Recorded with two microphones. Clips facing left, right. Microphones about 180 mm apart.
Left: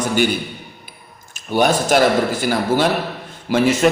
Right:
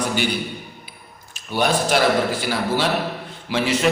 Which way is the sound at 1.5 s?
45° left (ahead or behind).